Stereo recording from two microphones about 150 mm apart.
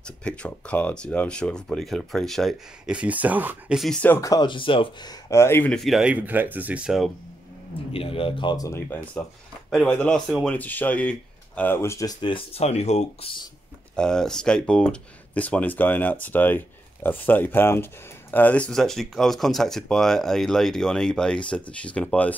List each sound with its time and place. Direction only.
0.0 s speech: 5° left (ahead or behind)
3.0 s speech: 10° right (ahead or behind)
4.0 s speech: 15° left (ahead or behind)
5.8 s speech: centre (ahead or behind)
7.9 s speech: 40° left (ahead or behind)
13.9 s speech: 5° left (ahead or behind)